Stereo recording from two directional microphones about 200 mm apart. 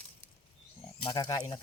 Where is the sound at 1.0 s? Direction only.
20° left (ahead or behind).